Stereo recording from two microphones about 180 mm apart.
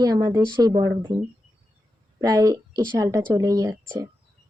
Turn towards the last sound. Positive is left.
turn(degrees=-20)  # may be behind; listen again after turning